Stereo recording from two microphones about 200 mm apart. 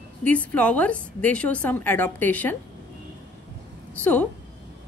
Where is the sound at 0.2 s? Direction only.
5° left (ahead or behind).